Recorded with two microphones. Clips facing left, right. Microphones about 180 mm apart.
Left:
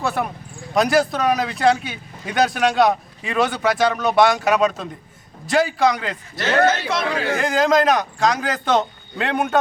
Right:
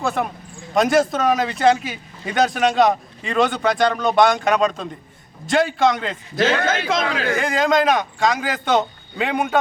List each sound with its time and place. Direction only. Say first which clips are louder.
0.0 s a man's voice: right 1 dB; centre (ahead or behind)
6.8 s speech: right 1 dB; 90° right
7.3 s a man's voice: left 1 dB; centre (ahead or behind)